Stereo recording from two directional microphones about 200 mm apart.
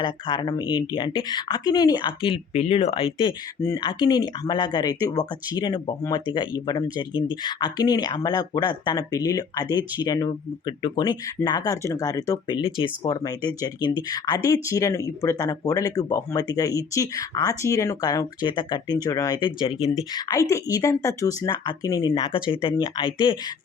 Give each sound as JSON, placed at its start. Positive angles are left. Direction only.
{"t": 0.0, "sound": "speech", "side_deg": 25}
{"t": 3.6, "sound": "speech", "side_deg": 15}
{"t": 20.1, "sound": "speech", "side_deg": 15}